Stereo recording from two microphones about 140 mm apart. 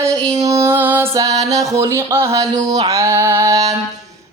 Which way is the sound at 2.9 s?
20° right (ahead or behind).